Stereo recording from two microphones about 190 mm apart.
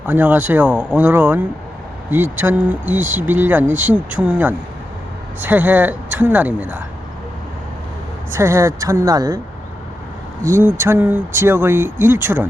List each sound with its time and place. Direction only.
0.0 s speech: 10° right (ahead or behind)
8.3 s speech: 15° right (ahead or behind)
10.4 s speech: 15° right (ahead or behind)